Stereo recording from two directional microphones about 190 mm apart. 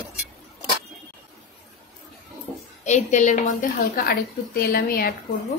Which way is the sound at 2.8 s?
40° left (ahead or behind).